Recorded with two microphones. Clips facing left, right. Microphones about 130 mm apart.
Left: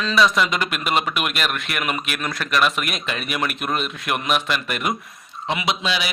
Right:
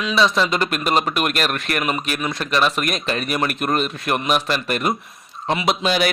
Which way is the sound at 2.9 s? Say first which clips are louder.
Right 4 dB; 40° right (ahead or behind).